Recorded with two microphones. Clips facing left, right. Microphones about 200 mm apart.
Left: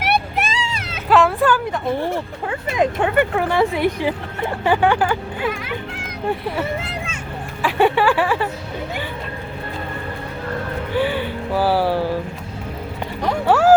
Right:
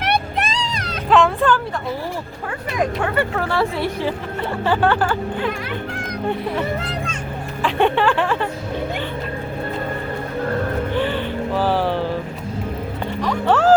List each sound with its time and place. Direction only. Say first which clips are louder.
0.0 s vehicle: left 1 dB; 5° left (ahead or behind)
2.7 s speech: left 3 dB; 20° left (ahead or behind); by 6.1 s 5° left (ahead or behind)
6.6 s a sound: right 1 dB; 5° left (ahead or behind)
7.6 s speech: left 1 dB; 10° left (ahead or behind)
10.9 s music: left 5 dB; 10° left (ahead or behind)
13.5 s music: left 1 dB; 10° left (ahead or behind)